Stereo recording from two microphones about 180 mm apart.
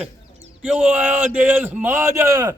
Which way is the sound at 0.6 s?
10° right (ahead or behind).